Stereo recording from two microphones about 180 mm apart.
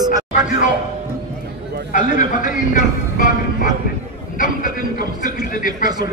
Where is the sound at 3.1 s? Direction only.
50° left (ahead or behind).